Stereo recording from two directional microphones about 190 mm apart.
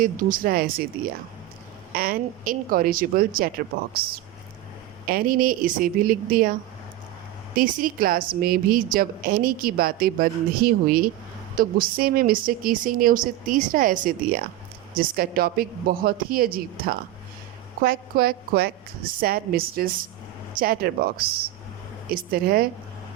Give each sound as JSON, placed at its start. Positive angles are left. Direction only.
{"t": 0.0, "sound": "a woman's voice", "side_deg": -45}
{"t": 1.9, "sound": "a woman's voice", "side_deg": -50}
{"t": 7.5, "sound": "a woman's voice", "side_deg": -45}